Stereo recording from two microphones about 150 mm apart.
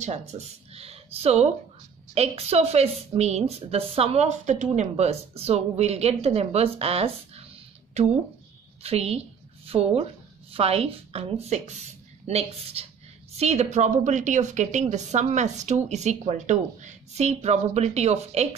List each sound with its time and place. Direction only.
0.0 s a woman's voice: 50° right (ahead or behind)